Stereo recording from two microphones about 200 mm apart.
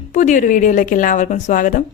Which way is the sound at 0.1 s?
40° left (ahead or behind).